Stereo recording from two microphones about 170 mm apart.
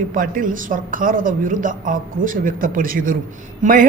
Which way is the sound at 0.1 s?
55° right (ahead or behind).